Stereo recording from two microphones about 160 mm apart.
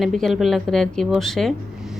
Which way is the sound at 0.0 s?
Centre (ahead or behind).